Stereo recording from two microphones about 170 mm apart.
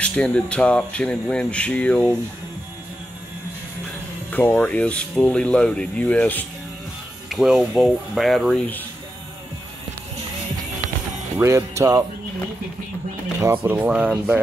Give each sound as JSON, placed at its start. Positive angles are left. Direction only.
{"t": 0.0, "sound": "speech", "side_deg": 5}
{"t": 4.3, "sound": "speech", "side_deg": 10}
{"t": 11.3, "sound": "speech", "side_deg": -15}
{"t": 13.4, "sound": "speech", "side_deg": -15}